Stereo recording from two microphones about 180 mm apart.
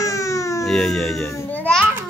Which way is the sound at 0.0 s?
15° left (ahead or behind).